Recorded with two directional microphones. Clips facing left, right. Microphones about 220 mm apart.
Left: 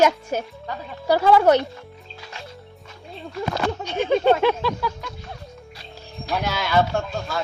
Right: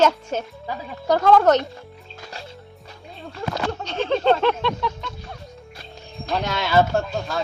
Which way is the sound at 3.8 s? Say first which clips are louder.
Left 1 dB; 10° left (ahead or behind).